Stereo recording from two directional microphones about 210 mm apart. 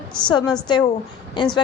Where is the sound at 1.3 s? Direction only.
20° left (ahead or behind).